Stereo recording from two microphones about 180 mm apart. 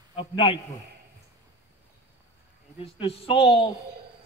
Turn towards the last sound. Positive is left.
turn(degrees=30)  # may be behind; listen again after turning